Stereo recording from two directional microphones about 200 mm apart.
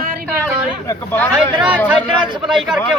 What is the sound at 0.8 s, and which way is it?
Speech, 10° left (ahead or behind).